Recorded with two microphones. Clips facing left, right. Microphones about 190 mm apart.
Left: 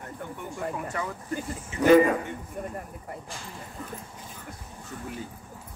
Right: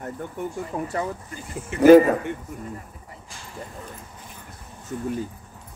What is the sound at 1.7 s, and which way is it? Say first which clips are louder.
Speech: right 8 dB; 60° right (ahead or behind).